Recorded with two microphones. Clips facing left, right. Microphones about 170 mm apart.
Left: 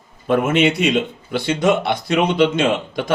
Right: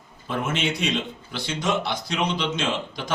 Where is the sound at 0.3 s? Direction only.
65° left (ahead or behind).